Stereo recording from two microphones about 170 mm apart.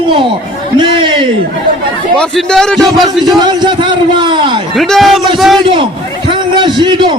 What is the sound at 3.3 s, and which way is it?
A man's voice, 25° right (ahead or behind).